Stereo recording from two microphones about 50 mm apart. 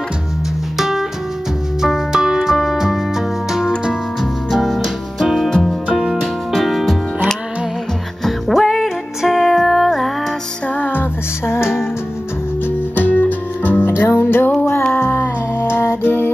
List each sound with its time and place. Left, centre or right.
0.7 s music: centre
5.5 s music: centre
5.9 s music: centre
8.2 s music: centre
10.8 s music: left
11.6 s music: centre
12.6 s music: left